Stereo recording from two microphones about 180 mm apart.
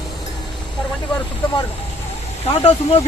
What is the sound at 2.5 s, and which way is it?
Speech, 30° left (ahead or behind).